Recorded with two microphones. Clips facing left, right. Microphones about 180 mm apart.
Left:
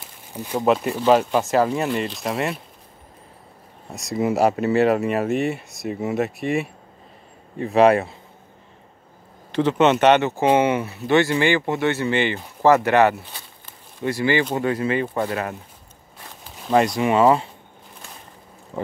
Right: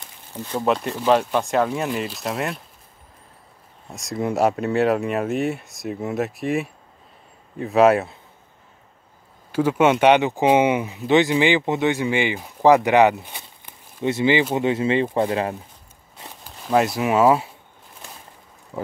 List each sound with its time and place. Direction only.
0.0 s a sound: 10° left (ahead or behind)
0.7 s speech: 5° left (ahead or behind)
3.9 s speech: centre (ahead or behind)
9.5 s speech: 10° right (ahead or behind); by 15.5 s 25° right (ahead or behind)
16.6 s speech: 5° right (ahead or behind)